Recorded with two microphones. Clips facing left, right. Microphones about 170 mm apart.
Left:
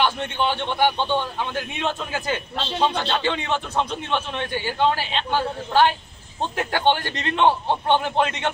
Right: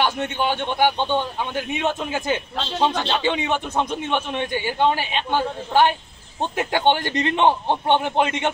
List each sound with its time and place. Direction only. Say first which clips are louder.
0.0 s a man's voice: even; 10° right (ahead or behind)